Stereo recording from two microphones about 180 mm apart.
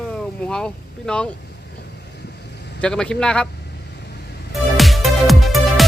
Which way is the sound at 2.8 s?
5° left (ahead or behind).